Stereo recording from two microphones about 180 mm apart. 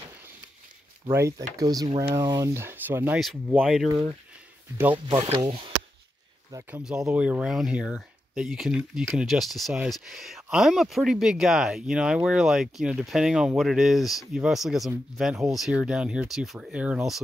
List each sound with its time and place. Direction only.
1.1 s speech: 20° right (ahead or behind); by 3.9 s centre (ahead or behind)
4.9 s speech: 25° right (ahead or behind)
6.8 s speech: 5° right (ahead or behind)